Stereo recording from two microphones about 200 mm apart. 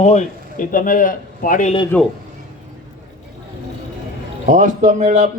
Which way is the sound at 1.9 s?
10° left (ahead or behind).